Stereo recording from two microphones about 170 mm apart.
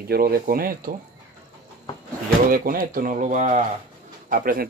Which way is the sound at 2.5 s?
55° right (ahead or behind).